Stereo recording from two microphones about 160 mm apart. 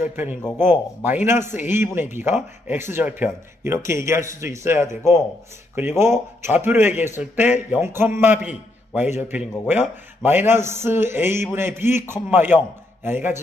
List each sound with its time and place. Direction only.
0.1 s a man's voice: 10° right (ahead or behind)